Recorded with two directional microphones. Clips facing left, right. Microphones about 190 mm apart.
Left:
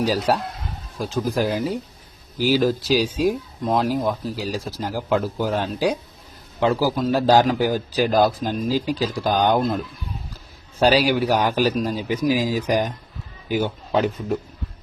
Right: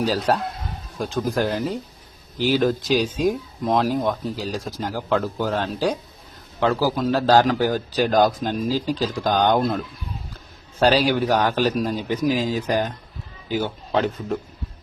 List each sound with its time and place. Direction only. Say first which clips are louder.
0.0 s speech: left 1 dB; 15° left (ahead or behind)
0.9 s speech: even; centre (ahead or behind)
8.7 s speech: left 1 dB; 10° left (ahead or behind)